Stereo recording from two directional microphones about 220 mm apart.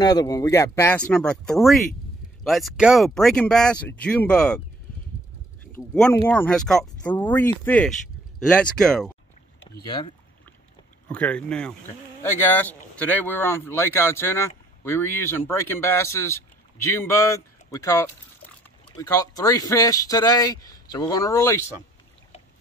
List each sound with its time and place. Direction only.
0.0 s speech: 15° left (ahead or behind)
6.2 s speech: 5° left (ahead or behind)
9.8 s speech: 20° left (ahead or behind)
11.1 s speech: 5° left (ahead or behind)